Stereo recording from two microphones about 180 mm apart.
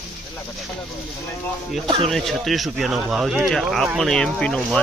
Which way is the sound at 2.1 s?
Centre (ahead or behind).